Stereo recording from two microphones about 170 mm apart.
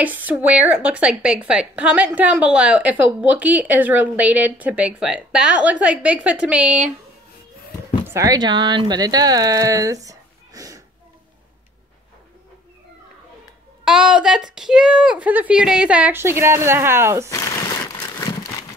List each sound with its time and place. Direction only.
0.0 s speech: 10° right (ahead or behind)
8.1 s speech: 20° right (ahead or behind)
13.8 s speech: 5° right (ahead or behind)